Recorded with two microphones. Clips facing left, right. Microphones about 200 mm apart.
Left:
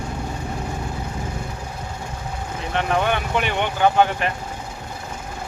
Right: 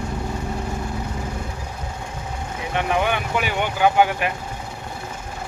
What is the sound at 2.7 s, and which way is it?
Speech, 10° right (ahead or behind).